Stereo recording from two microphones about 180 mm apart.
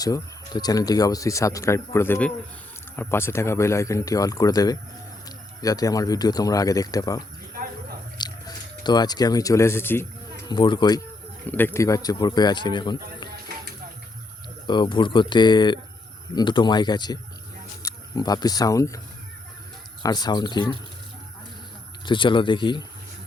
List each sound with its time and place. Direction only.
0.0 s speech: 20° left (ahead or behind)
7.5 s a sound: 55° right (ahead or behind)
8.2 s speech: 25° left (ahead or behind)
10.5 s speech: 25° left (ahead or behind)
11.4 s speech: 10° left (ahead or behind)
13.3 s music: 60° right (ahead or behind)
14.7 s speech: 25° left (ahead or behind)
20.0 s speech: 20° left (ahead or behind)
22.0 s speech: 25° left (ahead or behind)